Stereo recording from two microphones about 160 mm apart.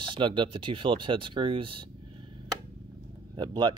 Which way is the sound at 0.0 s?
30° right (ahead or behind).